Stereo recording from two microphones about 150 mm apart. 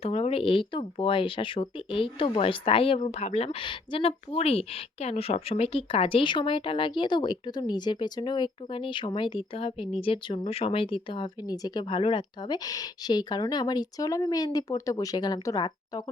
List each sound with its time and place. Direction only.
0.0 s speech: 45° left (ahead or behind); by 16.0 s 25° left (ahead or behind)